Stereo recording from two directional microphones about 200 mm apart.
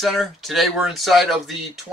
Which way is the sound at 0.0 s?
Centre (ahead or behind).